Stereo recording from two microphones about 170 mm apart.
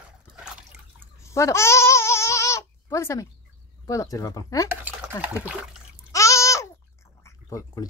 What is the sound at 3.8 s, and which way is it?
Speech, 20° left (ahead or behind).